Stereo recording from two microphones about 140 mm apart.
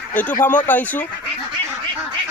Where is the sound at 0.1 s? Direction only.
10° left (ahead or behind).